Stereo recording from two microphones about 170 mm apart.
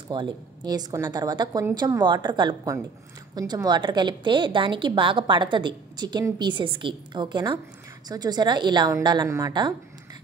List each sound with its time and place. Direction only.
0.1 s a woman's voice: 25° right (ahead or behind)